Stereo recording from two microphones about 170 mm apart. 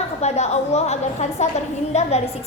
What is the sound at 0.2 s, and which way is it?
A woman's voice, 40° left (ahead or behind).